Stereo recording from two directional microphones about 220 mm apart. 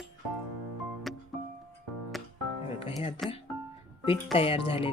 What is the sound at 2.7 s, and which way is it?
Music, 25° left (ahead or behind).